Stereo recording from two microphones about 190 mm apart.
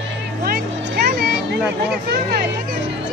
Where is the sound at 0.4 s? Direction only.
50° right (ahead or behind).